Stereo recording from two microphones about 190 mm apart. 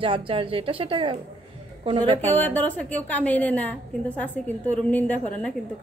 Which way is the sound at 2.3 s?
10° left (ahead or behind).